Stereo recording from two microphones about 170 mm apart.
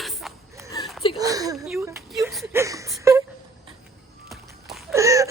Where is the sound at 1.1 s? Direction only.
20° right (ahead or behind).